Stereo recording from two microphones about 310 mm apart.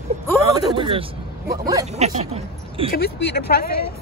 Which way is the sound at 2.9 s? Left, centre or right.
Left.